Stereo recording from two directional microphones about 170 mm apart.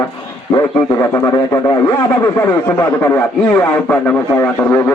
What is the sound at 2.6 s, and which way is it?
A man's voice, 10° left (ahead or behind).